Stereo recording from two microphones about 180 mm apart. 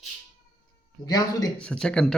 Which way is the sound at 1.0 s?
20° left (ahead or behind).